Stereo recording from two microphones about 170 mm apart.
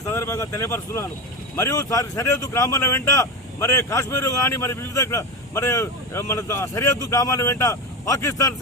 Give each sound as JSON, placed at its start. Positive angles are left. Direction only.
{"t": 0.0, "sound": "speech", "side_deg": 15}